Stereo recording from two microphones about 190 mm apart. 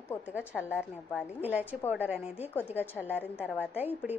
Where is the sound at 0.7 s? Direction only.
5° right (ahead or behind).